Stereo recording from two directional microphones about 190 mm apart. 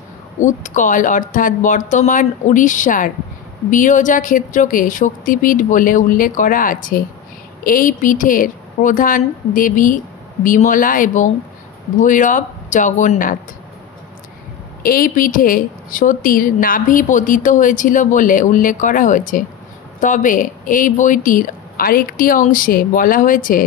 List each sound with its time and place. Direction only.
0.4 s a woman's voice: 40° left (ahead or behind)
14.8 s a woman's voice: 50° left (ahead or behind)